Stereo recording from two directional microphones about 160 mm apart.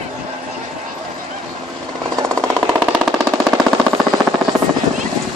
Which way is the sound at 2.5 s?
5° right (ahead or behind).